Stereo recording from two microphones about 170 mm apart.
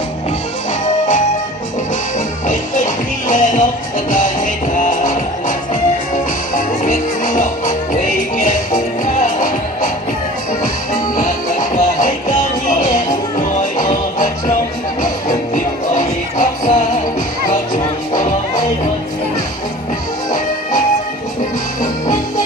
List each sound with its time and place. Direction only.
2.5 s music: 45° left (ahead or behind)
4.7 s music: 50° left (ahead or behind)
18.1 s music: 50° left (ahead or behind)